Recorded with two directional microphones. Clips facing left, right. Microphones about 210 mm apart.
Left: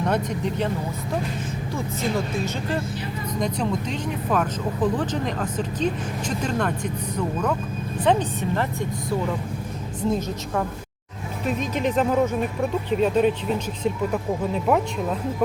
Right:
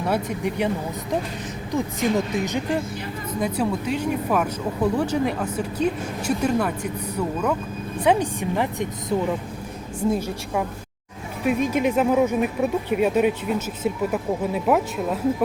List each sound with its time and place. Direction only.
0.0 s speech: 10° right (ahead or behind)
1.7 s speech: 15° right (ahead or behind)